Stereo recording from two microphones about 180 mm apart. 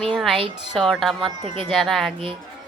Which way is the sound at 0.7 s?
Centre (ahead or behind).